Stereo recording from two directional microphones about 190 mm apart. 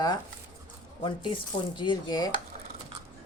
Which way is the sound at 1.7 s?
25° left (ahead or behind).